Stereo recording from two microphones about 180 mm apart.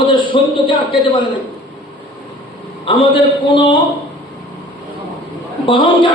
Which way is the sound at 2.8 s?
30° left (ahead or behind).